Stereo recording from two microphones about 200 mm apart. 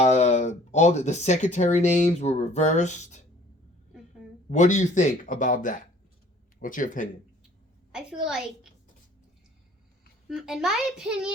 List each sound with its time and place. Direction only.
0.0 s speech: 35° left (ahead or behind)
4.4 s speech: 40° left (ahead or behind)
7.9 s a child's voice: 5° right (ahead or behind)
10.2 s a child's voice: centre (ahead or behind)